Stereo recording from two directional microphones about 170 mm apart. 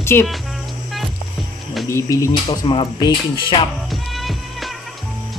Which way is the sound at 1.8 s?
15° left (ahead or behind).